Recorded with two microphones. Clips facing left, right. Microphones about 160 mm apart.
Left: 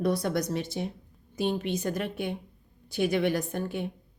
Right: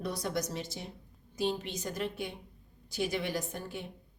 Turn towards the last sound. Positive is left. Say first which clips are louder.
# left 7 dB
turn(degrees=60)  # may be behind; listen again after turning